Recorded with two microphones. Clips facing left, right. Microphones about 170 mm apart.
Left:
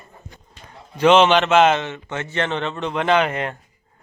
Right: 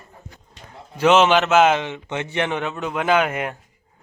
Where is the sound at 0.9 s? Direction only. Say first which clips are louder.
Left 1 dB; 5° right (ahead or behind).